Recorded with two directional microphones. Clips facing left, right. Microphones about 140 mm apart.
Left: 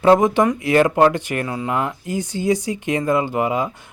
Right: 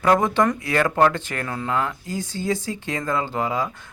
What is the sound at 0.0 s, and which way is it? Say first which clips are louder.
Speech: left 4 dB; 20° left (ahead or behind).